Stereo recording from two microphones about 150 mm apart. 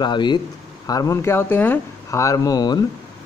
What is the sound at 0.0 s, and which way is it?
Speech, 30° left (ahead or behind).